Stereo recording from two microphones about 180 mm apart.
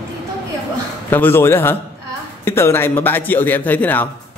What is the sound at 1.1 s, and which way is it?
A man's voice, 10° left (ahead or behind).